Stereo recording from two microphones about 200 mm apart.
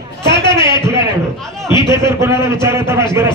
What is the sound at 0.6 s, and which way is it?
A man's voice, 15° right (ahead or behind).